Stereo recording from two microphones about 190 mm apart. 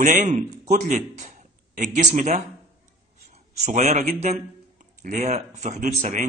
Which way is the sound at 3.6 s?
35° right (ahead or behind).